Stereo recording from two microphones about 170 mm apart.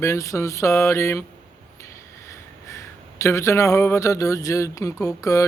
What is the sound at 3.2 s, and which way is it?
A man's voice, 15° left (ahead or behind).